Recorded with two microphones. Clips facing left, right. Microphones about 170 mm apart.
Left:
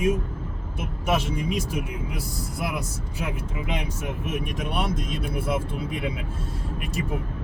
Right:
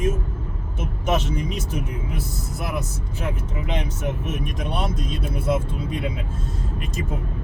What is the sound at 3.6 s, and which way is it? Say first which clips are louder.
Speech: right 4 dB; 10° left (ahead or behind).